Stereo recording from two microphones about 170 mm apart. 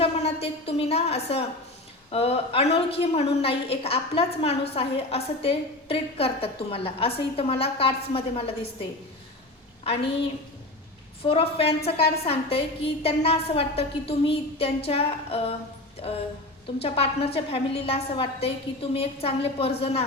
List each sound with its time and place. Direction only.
0.0 s a woman's voice: 35° left (ahead or behind)
11.2 s a woman's voice: 35° left (ahead or behind)